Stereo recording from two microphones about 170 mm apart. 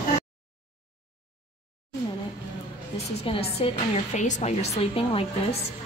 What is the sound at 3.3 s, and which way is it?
A woman's voice, 35° left (ahead or behind).